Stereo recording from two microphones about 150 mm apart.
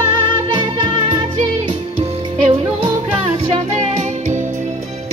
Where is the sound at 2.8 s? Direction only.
40° right (ahead or behind).